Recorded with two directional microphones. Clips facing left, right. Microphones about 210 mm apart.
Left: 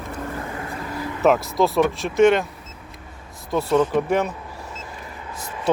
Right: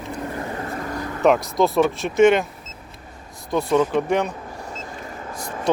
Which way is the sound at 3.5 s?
5° left (ahead or behind).